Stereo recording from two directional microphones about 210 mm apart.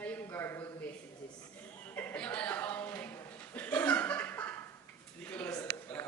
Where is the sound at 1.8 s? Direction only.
10° left (ahead or behind).